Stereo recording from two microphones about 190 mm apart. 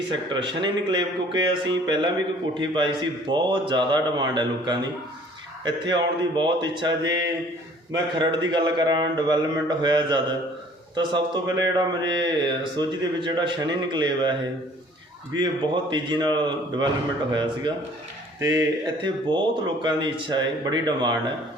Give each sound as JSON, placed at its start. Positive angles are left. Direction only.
{"t": 0.1, "sound": "speech", "side_deg": -25}
{"t": 15.4, "sound": "speech", "side_deg": -25}